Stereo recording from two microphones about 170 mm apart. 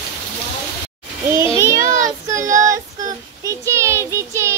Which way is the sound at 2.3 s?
20° right (ahead or behind).